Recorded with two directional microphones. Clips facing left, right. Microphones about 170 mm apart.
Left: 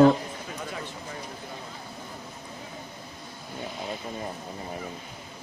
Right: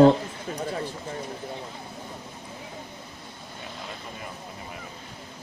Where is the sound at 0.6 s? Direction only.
35° right (ahead or behind).